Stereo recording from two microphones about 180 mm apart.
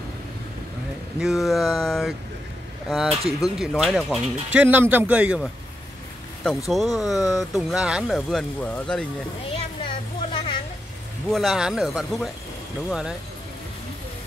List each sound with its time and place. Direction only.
1.2 s a man's voice: centre (ahead or behind)
6.7 s speech: centre (ahead or behind)
9.6 s a sound: 30° left (ahead or behind)
11.2 s speech: centre (ahead or behind)